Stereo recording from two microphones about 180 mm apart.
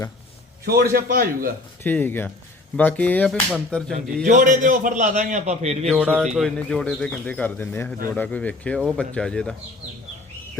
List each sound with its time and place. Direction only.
0.6 s a man's voice: 60° right (ahead or behind)
1.8 s speech: 10° left (ahead or behind)
4.3 s a man's voice: 45° right (ahead or behind)
6.1 s speech: centre (ahead or behind)